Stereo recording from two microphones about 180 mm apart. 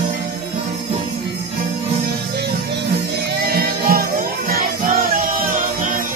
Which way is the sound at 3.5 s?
55° right (ahead or behind).